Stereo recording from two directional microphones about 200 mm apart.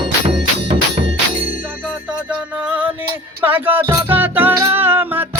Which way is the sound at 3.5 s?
10° right (ahead or behind).